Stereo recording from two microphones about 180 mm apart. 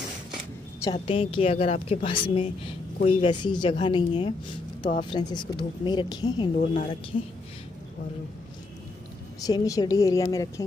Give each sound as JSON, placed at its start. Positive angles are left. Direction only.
{"t": 0.8, "sound": "a woman's voice", "side_deg": 30}
{"t": 9.4, "sound": "a woman's voice", "side_deg": 20}